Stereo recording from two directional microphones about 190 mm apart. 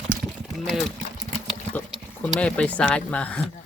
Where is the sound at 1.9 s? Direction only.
Centre (ahead or behind).